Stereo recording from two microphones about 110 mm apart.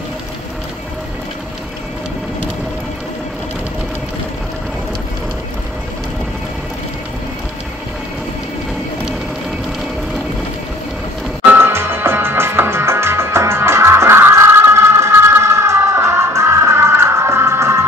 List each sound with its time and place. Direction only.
11.5 s music: 20° right (ahead or behind)